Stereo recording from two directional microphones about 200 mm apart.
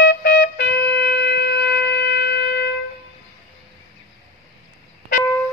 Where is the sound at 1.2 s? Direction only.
60° left (ahead or behind).